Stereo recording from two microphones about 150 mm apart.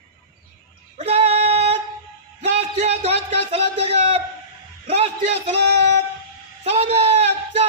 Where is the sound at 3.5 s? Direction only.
45° right (ahead or behind).